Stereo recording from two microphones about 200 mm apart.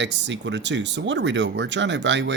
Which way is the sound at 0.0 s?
60° right (ahead or behind).